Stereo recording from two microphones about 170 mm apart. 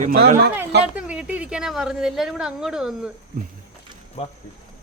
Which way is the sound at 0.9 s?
5° right (ahead or behind).